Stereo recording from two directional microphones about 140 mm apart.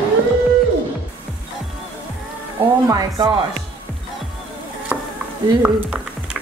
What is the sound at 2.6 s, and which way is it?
Music, 30° right (ahead or behind).